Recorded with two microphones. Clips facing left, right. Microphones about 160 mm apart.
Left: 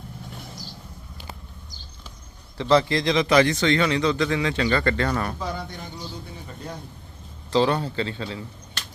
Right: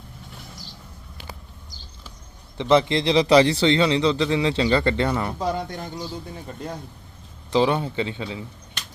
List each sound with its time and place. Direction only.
2.6 s a man's voice: 20° right (ahead or behind)
5.4 s speech: 40° right (ahead or behind)
7.5 s a man's voice: 15° right (ahead or behind)